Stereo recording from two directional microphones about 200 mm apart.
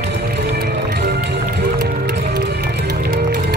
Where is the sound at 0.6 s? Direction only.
55° right (ahead or behind).